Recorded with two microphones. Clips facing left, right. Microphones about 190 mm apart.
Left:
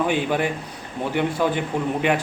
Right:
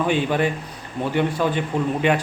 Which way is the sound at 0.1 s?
10° left (ahead or behind).